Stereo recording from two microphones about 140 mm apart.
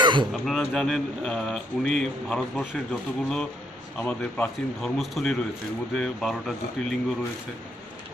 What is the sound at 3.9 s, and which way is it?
Speech, 5° left (ahead or behind).